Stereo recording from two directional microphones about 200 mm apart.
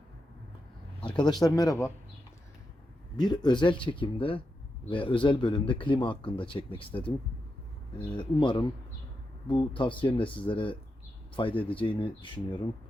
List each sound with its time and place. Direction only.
1.0 s speech: 20° left (ahead or behind)
3.2 s speech: 20° left (ahead or behind)
8.1 s speech: 25° left (ahead or behind)